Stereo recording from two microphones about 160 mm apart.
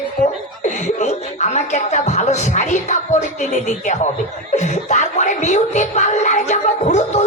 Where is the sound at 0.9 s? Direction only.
45° left (ahead or behind).